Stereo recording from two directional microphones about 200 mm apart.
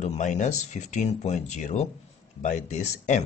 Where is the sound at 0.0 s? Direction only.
35° left (ahead or behind).